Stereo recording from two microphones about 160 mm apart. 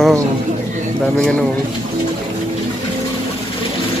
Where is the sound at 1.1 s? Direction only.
5° left (ahead or behind).